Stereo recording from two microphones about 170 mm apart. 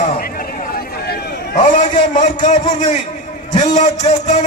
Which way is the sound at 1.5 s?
50° left (ahead or behind).